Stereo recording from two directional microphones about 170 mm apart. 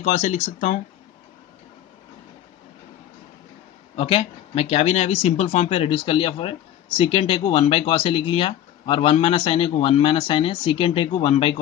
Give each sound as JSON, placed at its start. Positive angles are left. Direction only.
{"t": 0.0, "sound": "speech", "side_deg": 45}
{"t": 3.9, "sound": "speech", "side_deg": 35}